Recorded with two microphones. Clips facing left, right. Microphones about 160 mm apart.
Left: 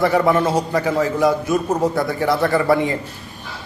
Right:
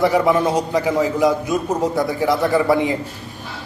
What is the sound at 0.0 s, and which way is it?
A man's voice, 15° right (ahead or behind).